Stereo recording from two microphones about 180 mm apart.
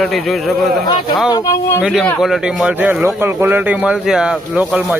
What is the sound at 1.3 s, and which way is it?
Speech, 20° left (ahead or behind).